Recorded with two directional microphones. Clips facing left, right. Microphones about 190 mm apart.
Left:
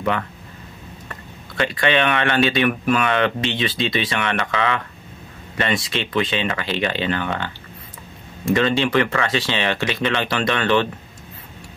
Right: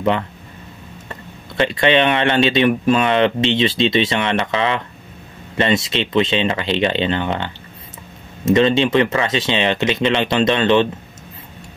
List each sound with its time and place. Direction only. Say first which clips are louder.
1.6 s speech: right 4 dB; 25° right (ahead or behind)